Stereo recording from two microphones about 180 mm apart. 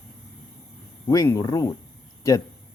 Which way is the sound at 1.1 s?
20° left (ahead or behind).